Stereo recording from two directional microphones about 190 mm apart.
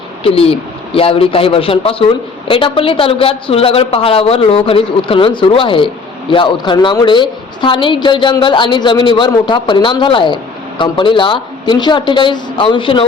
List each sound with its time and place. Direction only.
0.2 s a woman's voice: 30° left (ahead or behind)